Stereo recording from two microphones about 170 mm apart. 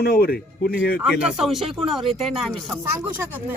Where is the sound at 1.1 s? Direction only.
5° right (ahead or behind).